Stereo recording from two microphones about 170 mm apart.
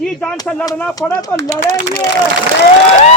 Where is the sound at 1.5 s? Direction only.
45° right (ahead or behind).